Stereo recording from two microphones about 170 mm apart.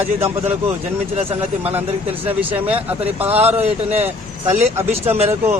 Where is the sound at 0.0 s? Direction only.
10° right (ahead or behind).